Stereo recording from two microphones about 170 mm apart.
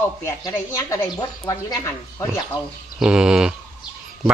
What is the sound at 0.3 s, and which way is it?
A woman's voice, 20° left (ahead or behind).